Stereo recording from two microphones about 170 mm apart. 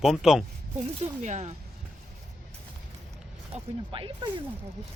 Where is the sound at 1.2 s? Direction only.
45° right (ahead or behind).